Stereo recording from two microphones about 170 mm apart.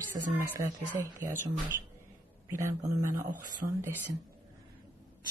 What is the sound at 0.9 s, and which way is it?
Speech, 10° right (ahead or behind).